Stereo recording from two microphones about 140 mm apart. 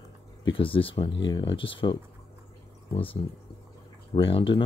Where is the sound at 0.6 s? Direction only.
40° left (ahead or behind).